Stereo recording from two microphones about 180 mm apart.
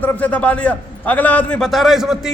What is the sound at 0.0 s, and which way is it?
A man's voice, 10° left (ahead or behind).